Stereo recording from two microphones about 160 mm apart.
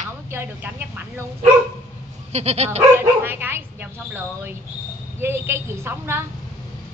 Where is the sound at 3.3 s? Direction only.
15° right (ahead or behind).